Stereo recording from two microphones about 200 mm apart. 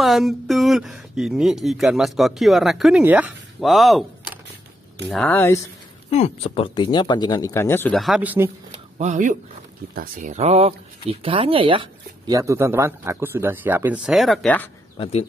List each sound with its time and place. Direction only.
0.0 s speech: centre (ahead or behind)
5.1 s speech: 10° left (ahead or behind)
6.0 s speech: 35° left (ahead or behind); by 8.0 s 10° left (ahead or behind)
8.0 s speech: 5° right (ahead or behind)
8.9 s speech: 40° right (ahead or behind); by 14.7 s 5° left (ahead or behind)